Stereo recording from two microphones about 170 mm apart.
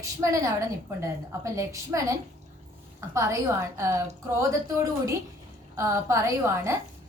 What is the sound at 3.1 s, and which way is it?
A woman's voice, 15° right (ahead or behind).